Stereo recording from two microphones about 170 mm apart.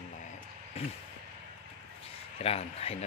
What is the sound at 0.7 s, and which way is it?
Speech, 35° left (ahead or behind).